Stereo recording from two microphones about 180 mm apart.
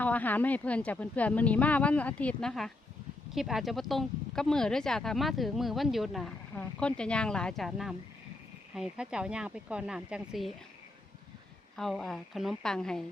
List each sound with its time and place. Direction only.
0.0 s speech: 10° left (ahead or behind)
11.8 s speech: centre (ahead or behind)